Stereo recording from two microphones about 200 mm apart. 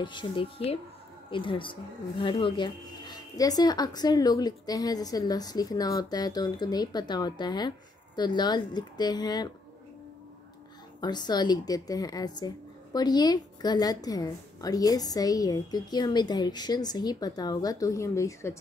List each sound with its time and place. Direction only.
0.0 s a woman's voice: 25° left (ahead or behind)
11.0 s a woman's voice: 20° left (ahead or behind)